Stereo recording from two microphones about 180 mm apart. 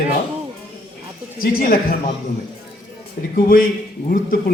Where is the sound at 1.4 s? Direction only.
55° left (ahead or behind).